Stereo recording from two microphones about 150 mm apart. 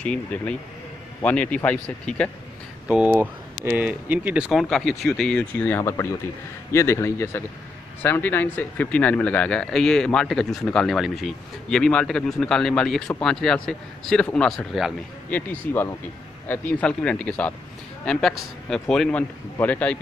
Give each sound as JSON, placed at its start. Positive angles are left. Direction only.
{"t": 0.0, "sound": "a man's voice", "side_deg": 5}
{"t": 2.9, "sound": "a man's voice", "side_deg": -10}
{"t": 15.3, "sound": "a man's voice", "side_deg": 15}